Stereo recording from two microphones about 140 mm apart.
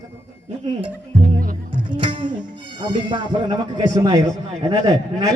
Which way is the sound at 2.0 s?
35° right (ahead or behind).